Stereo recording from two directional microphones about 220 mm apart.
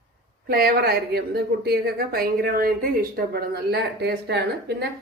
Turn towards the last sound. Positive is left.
turn(degrees=-50)  # may be behind; listen again after turning